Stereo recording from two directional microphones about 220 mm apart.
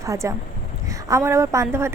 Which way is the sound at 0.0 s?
15° right (ahead or behind).